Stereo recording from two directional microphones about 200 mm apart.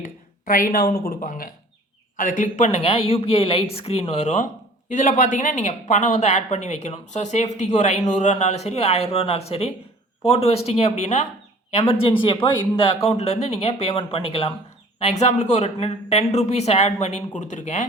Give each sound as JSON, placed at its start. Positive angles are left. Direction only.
{"t": 0.0, "sound": "speech", "side_deg": 45}